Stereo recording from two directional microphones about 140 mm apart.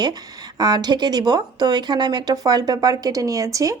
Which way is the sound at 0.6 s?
30° right (ahead or behind).